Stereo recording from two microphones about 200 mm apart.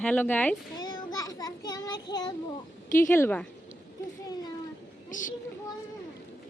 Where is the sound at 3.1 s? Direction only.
10° left (ahead or behind).